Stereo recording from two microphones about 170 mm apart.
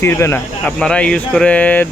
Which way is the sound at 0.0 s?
15° left (ahead or behind).